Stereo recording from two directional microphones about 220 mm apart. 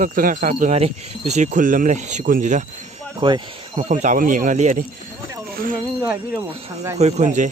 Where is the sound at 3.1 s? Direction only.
20° right (ahead or behind).